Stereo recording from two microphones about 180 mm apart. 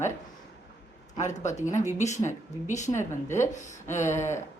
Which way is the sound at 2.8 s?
15° left (ahead or behind).